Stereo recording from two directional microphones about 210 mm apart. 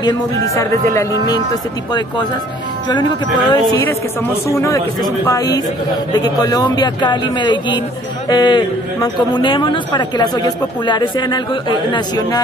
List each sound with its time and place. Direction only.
1.2 s a man's voice: 20° left (ahead or behind)